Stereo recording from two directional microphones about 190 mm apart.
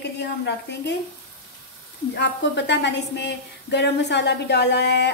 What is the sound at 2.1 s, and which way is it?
A woman's voice, 65° left (ahead or behind).